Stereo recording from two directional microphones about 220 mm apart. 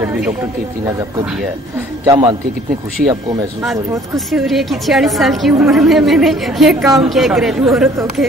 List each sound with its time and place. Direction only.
2.0 s a man's voice: 20° right (ahead or behind)
4.3 s a woman's voice: centre (ahead or behind)